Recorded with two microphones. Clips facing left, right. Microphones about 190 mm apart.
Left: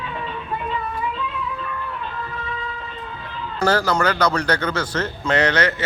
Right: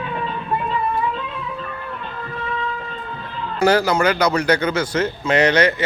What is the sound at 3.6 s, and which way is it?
A man's voice, 15° right (ahead or behind).